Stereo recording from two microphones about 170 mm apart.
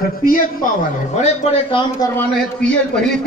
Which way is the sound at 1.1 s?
40° left (ahead or behind).